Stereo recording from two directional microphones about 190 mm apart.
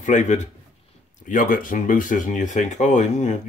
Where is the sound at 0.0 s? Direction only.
40° left (ahead or behind).